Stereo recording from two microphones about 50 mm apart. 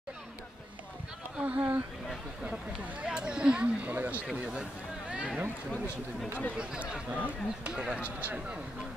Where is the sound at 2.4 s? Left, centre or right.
Right.